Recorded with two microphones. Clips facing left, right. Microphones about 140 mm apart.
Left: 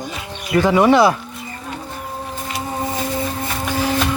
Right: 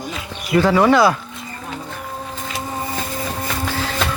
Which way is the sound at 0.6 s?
25° left (ahead or behind).